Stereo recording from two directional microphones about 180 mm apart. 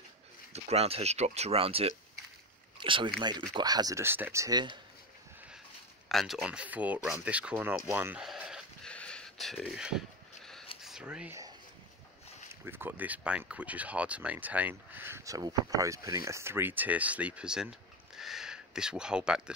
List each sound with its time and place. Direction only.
0.5 s speech: 35° right (ahead or behind)
6.0 s speech: centre (ahead or behind)
10.8 s a sound: 5° right (ahead or behind)
12.6 s speech: 10° right (ahead or behind)